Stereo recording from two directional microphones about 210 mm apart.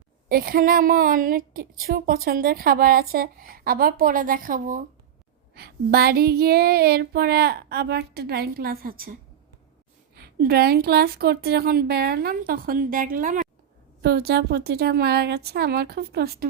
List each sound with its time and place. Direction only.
0.3 s a woman's voice: 45° right (ahead or behind)
10.2 s a woman's voice: 50° right (ahead or behind)